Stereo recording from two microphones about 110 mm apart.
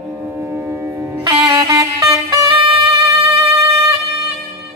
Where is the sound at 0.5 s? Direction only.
20° right (ahead or behind).